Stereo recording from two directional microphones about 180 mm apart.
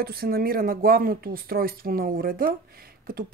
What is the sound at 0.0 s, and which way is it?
A woman's voice, 55° right (ahead or behind).